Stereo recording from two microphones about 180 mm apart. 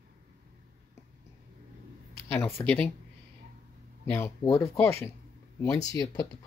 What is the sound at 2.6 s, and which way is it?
Speech, 25° left (ahead or behind).